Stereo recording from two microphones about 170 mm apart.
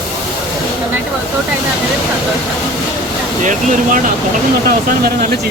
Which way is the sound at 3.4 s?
50° right (ahead or behind).